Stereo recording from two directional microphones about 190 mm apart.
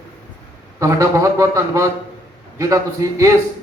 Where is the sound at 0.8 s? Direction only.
15° right (ahead or behind).